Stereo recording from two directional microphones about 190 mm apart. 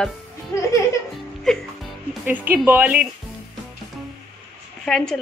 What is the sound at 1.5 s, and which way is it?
A woman's voice, centre (ahead or behind).